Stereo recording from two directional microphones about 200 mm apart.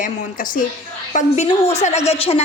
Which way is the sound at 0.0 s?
40° left (ahead or behind).